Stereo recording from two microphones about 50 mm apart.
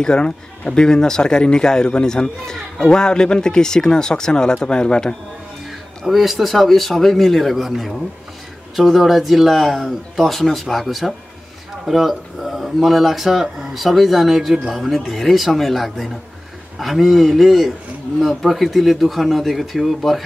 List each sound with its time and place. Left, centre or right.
0.0 s speech: centre
6.0 s speech: centre